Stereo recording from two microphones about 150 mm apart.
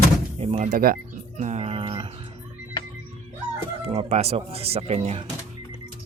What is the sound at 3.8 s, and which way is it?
Speech, 45° right (ahead or behind).